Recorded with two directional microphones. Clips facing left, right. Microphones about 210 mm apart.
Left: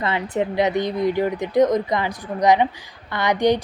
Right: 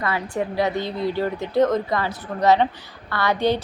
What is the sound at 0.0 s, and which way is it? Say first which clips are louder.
A woman's voice: left 2 dB; 20° left (ahead or behind).